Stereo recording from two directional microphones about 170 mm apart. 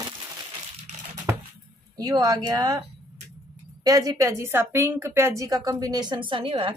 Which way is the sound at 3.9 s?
20° right (ahead or behind).